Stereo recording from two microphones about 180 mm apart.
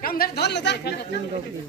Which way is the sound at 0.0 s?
55° left (ahead or behind).